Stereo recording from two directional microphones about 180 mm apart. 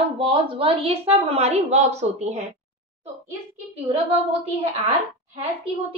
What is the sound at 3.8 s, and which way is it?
Speech, 35° right (ahead or behind).